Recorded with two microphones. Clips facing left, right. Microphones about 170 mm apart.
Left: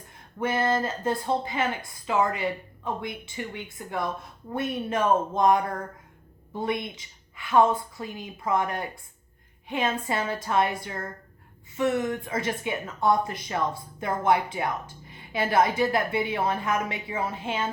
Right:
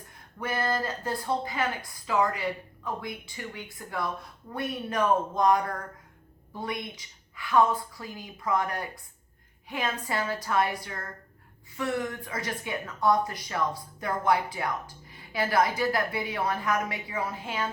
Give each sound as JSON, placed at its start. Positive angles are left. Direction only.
{"t": 0.3, "sound": "speech", "side_deg": 25}